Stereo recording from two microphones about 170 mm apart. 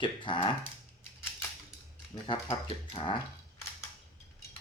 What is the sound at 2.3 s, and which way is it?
Speech, 30° left (ahead or behind).